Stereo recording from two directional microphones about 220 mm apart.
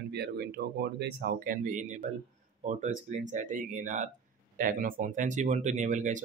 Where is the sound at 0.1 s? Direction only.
50° right (ahead or behind).